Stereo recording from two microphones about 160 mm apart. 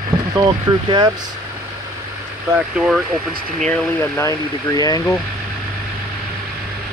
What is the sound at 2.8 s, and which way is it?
Speech, 5° right (ahead or behind).